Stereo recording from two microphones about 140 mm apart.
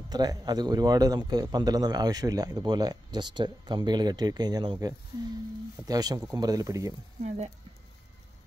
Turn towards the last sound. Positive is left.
turn(degrees=-50)  # may be behind; listen again after turning